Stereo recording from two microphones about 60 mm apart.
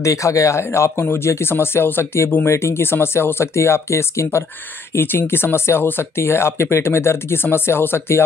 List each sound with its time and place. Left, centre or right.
0.0 s speech: left
4.9 s speech: left